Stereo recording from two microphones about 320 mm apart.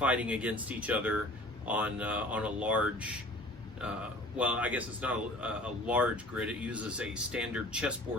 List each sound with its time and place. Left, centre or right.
0.0 s speech: centre
4.4 s speech: centre